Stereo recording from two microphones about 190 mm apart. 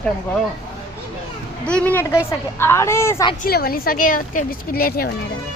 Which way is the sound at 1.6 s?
5° left (ahead or behind).